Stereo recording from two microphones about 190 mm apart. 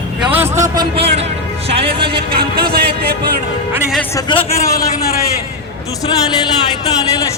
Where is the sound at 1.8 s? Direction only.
30° right (ahead or behind).